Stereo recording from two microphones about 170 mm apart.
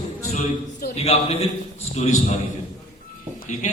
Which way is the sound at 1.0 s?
40° left (ahead or behind).